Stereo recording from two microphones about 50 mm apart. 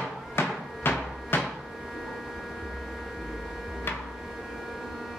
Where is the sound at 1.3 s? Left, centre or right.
Left.